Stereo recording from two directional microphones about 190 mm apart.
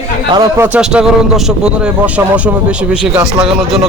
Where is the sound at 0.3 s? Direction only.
15° right (ahead or behind).